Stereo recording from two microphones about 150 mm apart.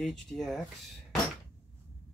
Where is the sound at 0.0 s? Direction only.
Centre (ahead or behind).